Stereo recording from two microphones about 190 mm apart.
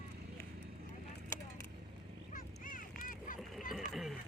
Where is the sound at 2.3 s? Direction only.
45° left (ahead or behind).